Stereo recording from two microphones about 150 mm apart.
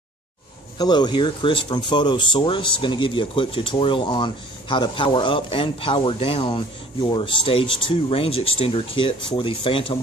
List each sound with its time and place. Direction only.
0.7 s speech: 30° left (ahead or behind)